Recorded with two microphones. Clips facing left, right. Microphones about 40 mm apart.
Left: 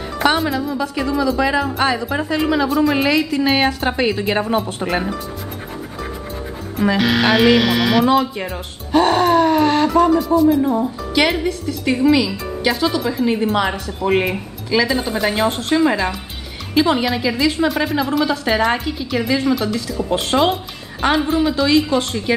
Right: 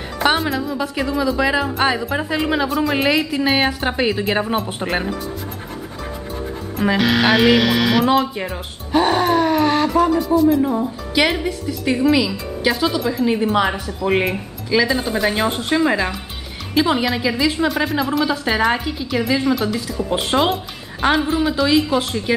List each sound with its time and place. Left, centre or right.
0.2 s a woman's voice: centre
4.6 s a woman's voice: centre
6.8 s a woman's voice: centre